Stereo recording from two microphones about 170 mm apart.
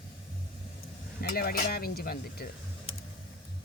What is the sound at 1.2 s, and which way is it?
Speech, 60° left (ahead or behind).